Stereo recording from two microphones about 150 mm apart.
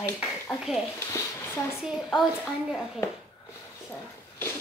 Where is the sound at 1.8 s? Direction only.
Centre (ahead or behind).